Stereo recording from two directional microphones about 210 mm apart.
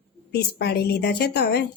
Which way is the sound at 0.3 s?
50° left (ahead or behind).